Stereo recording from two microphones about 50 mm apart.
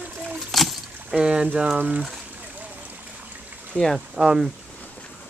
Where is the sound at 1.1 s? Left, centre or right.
Centre.